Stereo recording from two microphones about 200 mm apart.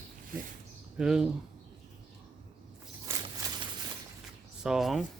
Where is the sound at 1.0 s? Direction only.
5° right (ahead or behind).